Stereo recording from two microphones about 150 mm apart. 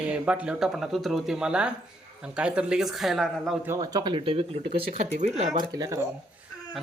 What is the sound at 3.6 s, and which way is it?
Speech, 25° right (ahead or behind).